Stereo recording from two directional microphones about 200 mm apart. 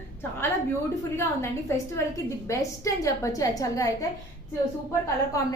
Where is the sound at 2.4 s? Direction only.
15° left (ahead or behind).